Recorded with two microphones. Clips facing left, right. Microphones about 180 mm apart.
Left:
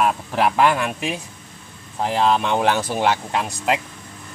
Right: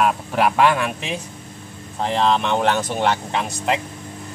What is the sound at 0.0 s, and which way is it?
Speech, centre (ahead or behind).